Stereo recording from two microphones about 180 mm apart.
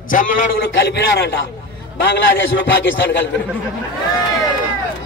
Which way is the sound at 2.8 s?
90° left.